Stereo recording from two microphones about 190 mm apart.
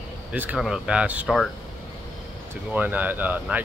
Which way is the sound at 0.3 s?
5° right (ahead or behind).